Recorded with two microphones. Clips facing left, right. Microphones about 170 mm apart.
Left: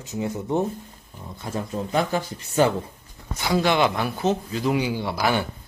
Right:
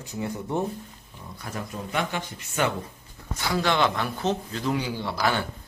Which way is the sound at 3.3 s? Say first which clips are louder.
Left 4 dB; 20° left (ahead or behind).